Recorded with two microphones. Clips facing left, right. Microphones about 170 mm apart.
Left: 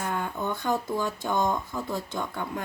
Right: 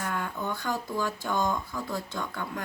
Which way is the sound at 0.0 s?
20° left (ahead or behind).